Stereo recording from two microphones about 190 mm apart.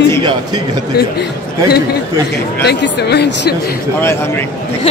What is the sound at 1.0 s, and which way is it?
Speech, 55° left (ahead or behind).